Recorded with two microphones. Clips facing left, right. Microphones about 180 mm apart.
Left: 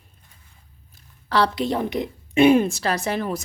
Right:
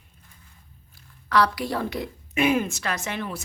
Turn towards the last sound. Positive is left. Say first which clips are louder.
# left 6 dB
turn(degrees=40)  # may be behind; listen again after turning